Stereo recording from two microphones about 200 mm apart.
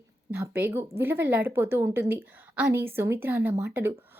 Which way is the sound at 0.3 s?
10° right (ahead or behind).